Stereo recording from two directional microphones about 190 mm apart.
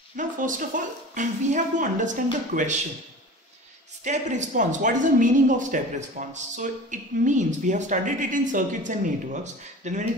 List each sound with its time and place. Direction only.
0.1 s speech: 45° right (ahead or behind)
4.0 s speech: 40° right (ahead or behind)